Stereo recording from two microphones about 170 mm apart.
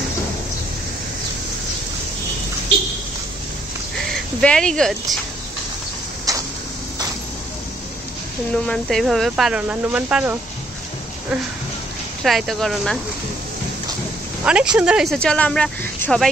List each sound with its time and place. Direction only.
4.1 s a sound: 5° left (ahead or behind)
6.3 s a sound: 20° right (ahead or behind)
8.6 s speech: 5° left (ahead or behind)
12.2 s speech: centre (ahead or behind)
14.4 s speech: 5° right (ahead or behind)
15.1 s speech: 5° left (ahead or behind)